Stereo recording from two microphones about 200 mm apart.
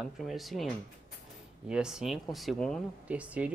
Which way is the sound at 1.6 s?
5° right (ahead or behind).